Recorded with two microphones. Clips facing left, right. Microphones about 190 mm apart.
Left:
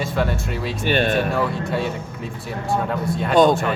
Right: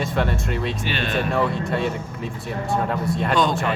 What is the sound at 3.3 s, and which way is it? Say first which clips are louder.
Speech: left 7 dB; 55° left (ahead or behind).